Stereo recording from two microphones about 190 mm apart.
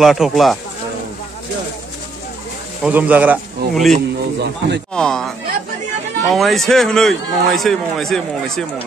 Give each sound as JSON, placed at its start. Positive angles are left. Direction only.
{"t": 0.0, "sound": "speech", "side_deg": 0}
{"t": 2.8, "sound": "speech", "side_deg": -10}
{"t": 4.4, "sound": "speech", "side_deg": -65}
{"t": 4.9, "sound": "speech", "side_deg": 5}